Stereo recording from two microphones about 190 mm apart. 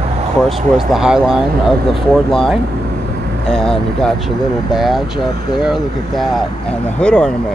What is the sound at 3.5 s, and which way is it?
Speech, 5° left (ahead or behind).